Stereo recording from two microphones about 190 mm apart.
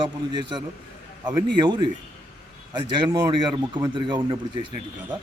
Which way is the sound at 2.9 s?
25° right (ahead or behind).